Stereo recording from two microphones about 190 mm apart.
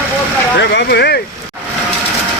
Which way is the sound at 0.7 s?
60° left (ahead or behind).